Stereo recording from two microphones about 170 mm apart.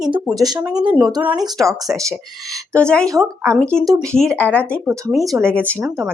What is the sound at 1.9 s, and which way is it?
Speech, 20° right (ahead or behind).